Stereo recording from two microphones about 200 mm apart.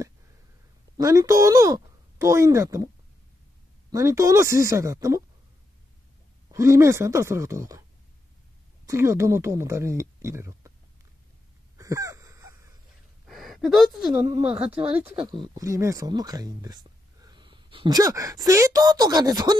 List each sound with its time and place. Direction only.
0.9 s speech: 15° right (ahead or behind)
3.9 s speech: 15° right (ahead or behind)
6.5 s speech: 15° right (ahead or behind)
8.8 s speech: 15° right (ahead or behind)
11.7 s a sound: 15° right (ahead or behind)
13.3 s a sound: centre (ahead or behind)
14.1 s speech: 15° right (ahead or behind)
14.6 s speech: 30° right (ahead or behind)
14.9 s speech: 10° right (ahead or behind)
15.1 s speech: 25° right (ahead or behind)